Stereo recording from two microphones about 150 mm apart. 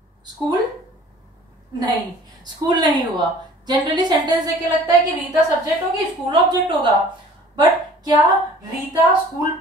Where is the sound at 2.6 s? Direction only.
30° right (ahead or behind).